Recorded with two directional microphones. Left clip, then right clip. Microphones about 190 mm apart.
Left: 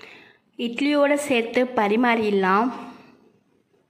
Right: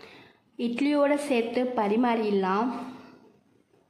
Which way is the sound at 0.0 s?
5° left (ahead or behind).